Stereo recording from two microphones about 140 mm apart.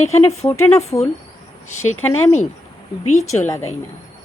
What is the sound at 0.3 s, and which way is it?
A woman's voice, 20° left (ahead or behind).